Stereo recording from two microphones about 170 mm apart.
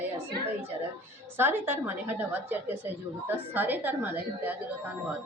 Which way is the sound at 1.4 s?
15° right (ahead or behind).